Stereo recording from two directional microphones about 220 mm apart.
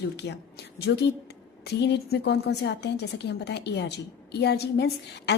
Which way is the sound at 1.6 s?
50° left (ahead or behind).